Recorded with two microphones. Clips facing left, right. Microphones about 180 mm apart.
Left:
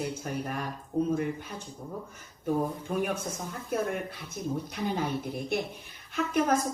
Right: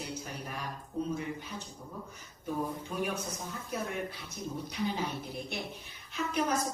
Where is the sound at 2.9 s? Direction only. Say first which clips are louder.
Left 4 dB; 55° left (ahead or behind).